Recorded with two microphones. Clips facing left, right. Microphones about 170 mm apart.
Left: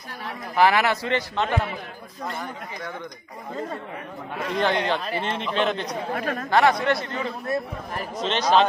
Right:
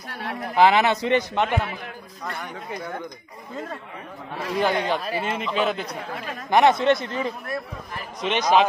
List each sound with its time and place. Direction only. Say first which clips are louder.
0.1 s speech: right 3 dB; 65° right (ahead or behind)
0.6 s a man's voice: right 2 dB; 20° right (ahead or behind)
4.6 s speech: right 1 dB; 10° right (ahead or behind)
6.1 s speech: left 6 dB; 50° left (ahead or behind)
6.5 s a man's voice: right 3 dB; 20° right (ahead or behind)